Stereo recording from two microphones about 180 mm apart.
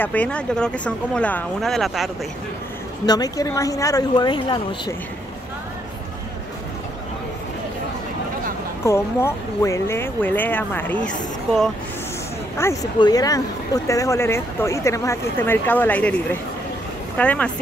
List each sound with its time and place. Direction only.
0.0 s speech: 10° left (ahead or behind)
3.1 s speech: 20° left (ahead or behind)
8.8 s speech: 15° left (ahead or behind)
12.5 s speech: 15° left (ahead or behind)